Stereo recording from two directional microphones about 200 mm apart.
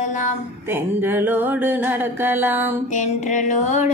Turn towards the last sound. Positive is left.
turn(degrees=40)  # may be behind; listen again after turning